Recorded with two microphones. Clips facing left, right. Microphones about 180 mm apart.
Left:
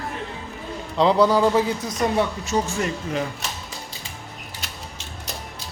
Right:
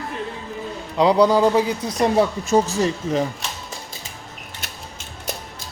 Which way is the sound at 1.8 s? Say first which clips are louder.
Right 4 dB; 30° right (ahead or behind).